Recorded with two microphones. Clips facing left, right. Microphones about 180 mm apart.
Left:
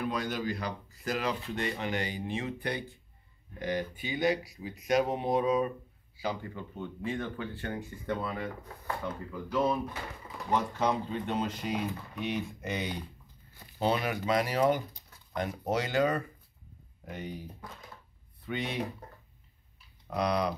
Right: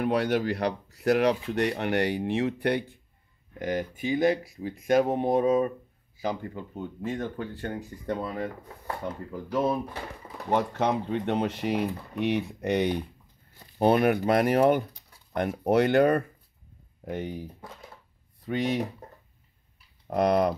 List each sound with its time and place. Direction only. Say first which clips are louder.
0.0 s speech: right 8 dB; 65° right (ahead or behind)
3.5 s speech: right 3 dB; 45° right (ahead or behind)
10.5 s speech: right 4 dB; 65° right (ahead or behind)
18.4 s speech: right 8 dB; 40° right (ahead or behind)
20.1 s speech: right 7 dB; 50° right (ahead or behind)